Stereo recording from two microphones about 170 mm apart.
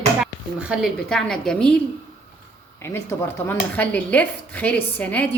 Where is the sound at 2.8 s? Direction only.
15° left (ahead or behind).